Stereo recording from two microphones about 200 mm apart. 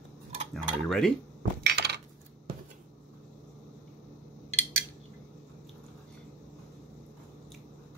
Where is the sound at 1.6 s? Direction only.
55° right (ahead or behind).